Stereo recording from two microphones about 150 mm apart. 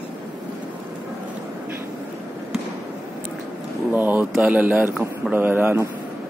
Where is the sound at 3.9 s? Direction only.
10° right (ahead or behind).